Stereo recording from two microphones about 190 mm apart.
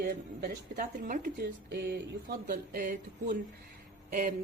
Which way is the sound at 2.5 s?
45° right (ahead or behind).